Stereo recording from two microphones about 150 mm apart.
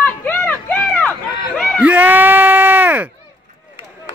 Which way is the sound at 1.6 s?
5° left (ahead or behind).